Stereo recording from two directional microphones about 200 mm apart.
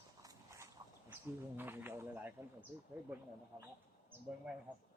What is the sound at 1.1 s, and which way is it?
Speech, 10° right (ahead or behind).